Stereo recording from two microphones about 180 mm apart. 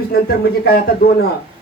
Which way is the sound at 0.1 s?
60° left (ahead or behind).